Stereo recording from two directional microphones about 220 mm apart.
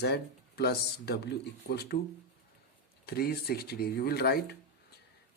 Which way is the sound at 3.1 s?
45° left (ahead or behind).